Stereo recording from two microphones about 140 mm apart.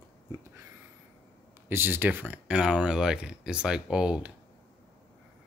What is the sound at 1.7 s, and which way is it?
Speech, 15° right (ahead or behind).